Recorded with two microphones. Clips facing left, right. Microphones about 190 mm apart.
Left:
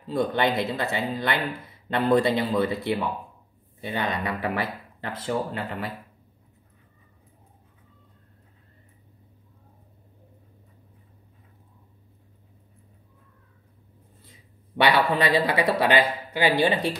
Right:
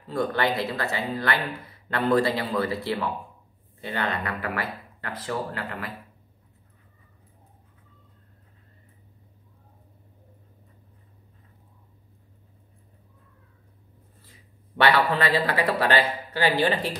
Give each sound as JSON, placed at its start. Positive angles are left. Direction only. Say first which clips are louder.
{"t": 0.0, "sound": "speech", "louder": "left 2 dB", "side_deg": 20}
{"t": 14.8, "sound": "speech", "louder": "even", "side_deg": 15}